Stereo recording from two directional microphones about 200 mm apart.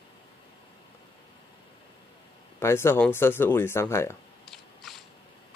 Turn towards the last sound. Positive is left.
turn(degrees=0)  # may be behind; listen again after turning